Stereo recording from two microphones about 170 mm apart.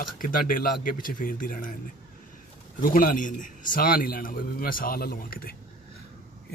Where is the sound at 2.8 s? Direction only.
55° left (ahead or behind).